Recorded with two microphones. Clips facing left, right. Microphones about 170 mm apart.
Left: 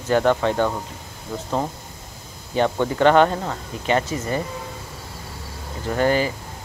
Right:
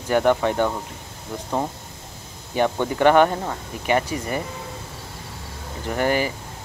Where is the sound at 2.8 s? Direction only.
15° right (ahead or behind).